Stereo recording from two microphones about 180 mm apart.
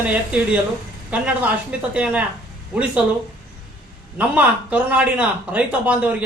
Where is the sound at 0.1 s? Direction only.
5° right (ahead or behind).